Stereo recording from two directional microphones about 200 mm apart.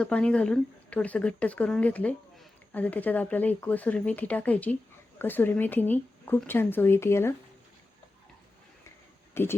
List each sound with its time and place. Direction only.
0.0 s speech: 5° left (ahead or behind)
9.3 s speech: 10° left (ahead or behind)